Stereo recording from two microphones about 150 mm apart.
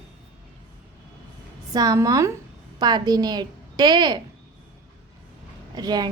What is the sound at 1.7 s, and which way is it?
A woman's voice, 25° right (ahead or behind).